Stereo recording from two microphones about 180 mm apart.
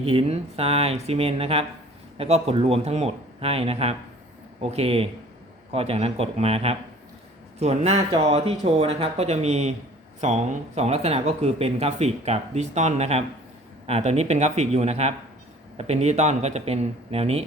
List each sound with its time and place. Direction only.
0.0 s speech: 30° right (ahead or behind)